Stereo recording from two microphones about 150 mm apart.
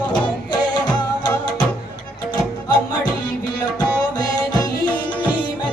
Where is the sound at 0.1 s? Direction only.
30° left (ahead or behind).